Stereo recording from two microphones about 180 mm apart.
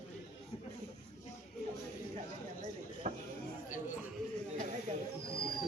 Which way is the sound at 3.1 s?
45° right (ahead or behind).